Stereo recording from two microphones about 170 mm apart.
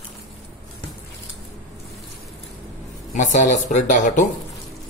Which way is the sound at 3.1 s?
45° left (ahead or behind).